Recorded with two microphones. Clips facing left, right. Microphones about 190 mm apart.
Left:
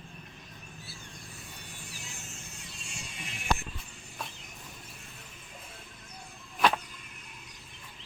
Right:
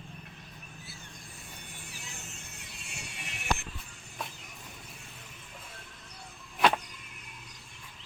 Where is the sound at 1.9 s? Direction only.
60° right (ahead or behind).